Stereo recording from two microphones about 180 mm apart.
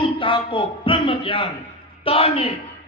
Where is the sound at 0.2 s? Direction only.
30° left (ahead or behind).